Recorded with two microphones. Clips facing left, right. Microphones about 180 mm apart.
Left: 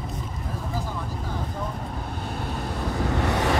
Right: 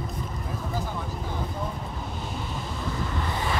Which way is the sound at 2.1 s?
60° left (ahead or behind).